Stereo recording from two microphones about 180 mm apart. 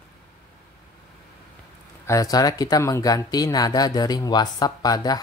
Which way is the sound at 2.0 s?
20° left (ahead or behind).